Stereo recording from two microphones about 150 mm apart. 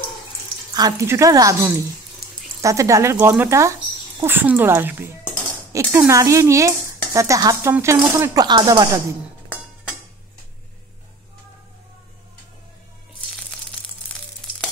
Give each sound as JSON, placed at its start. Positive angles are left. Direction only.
{"t": 0.7, "sound": "speech", "side_deg": -20}
{"t": 14.4, "sound": "frying", "side_deg": 5}